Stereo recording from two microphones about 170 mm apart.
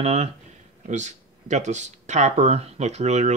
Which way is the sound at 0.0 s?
40° right (ahead or behind).